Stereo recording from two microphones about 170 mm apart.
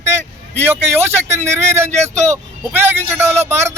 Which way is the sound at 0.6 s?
15° right (ahead or behind).